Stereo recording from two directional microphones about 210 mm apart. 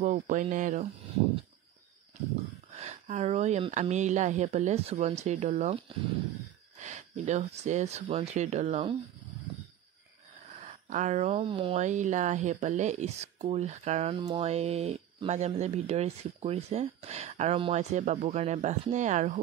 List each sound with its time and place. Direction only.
0.0 s speech: 35° right (ahead or behind)
2.7 s speech: 30° right (ahead or behind)
10.6 s speech: 35° right (ahead or behind)